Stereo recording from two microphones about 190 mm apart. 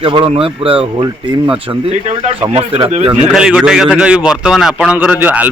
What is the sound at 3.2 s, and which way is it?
A man's voice, 5° right (ahead or behind).